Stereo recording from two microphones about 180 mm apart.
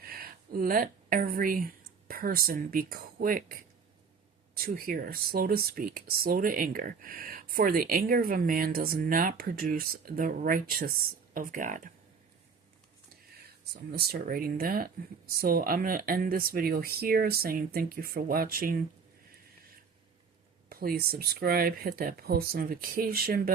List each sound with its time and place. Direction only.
0.0 s speech: 55° right (ahead or behind)
13.9 s speech: 60° right (ahead or behind)
20.7 s speech: 55° right (ahead or behind)